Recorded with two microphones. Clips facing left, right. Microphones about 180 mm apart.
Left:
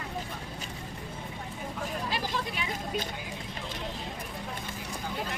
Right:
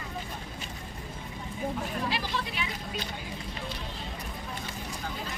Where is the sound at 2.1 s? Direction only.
45° left (ahead or behind).